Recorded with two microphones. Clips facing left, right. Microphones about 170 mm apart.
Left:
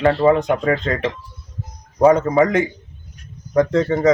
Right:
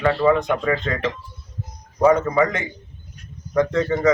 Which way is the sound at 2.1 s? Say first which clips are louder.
Left 2 dB; 35° left (ahead or behind).